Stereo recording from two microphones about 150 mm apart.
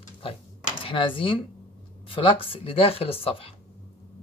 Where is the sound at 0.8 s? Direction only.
35° left (ahead or behind).